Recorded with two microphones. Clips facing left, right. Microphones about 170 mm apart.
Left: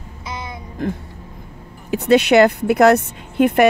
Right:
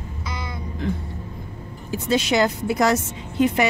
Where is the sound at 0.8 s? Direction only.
50° left (ahead or behind).